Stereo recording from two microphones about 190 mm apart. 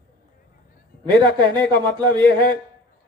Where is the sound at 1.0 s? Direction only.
25° right (ahead or behind).